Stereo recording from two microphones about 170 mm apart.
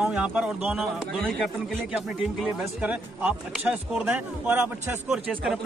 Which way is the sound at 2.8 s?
5° right (ahead or behind).